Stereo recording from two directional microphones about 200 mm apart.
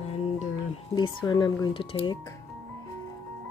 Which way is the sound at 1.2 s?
20° left (ahead or behind).